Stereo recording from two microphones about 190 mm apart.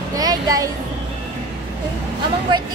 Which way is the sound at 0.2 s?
20° right (ahead or behind).